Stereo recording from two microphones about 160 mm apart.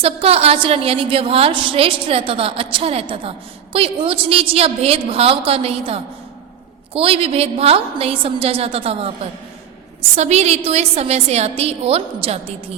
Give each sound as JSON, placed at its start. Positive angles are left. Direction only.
{"t": 0.0, "sound": "a woman's voice", "side_deg": -40}
{"t": 10.2, "sound": "a woman's voice", "side_deg": -45}